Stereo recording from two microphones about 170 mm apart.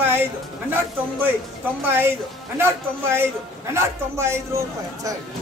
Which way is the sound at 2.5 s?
15° right (ahead or behind).